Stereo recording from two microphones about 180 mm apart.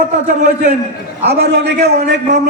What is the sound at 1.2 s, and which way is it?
Speech, 65° right (ahead or behind).